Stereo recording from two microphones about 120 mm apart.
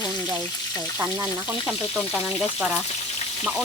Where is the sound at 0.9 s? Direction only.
15° right (ahead or behind).